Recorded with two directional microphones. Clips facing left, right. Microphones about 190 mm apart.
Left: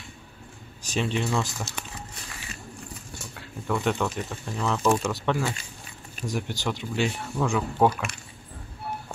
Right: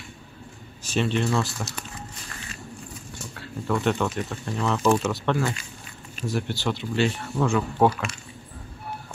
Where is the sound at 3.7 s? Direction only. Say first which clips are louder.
Right 2 dB; centre (ahead or behind).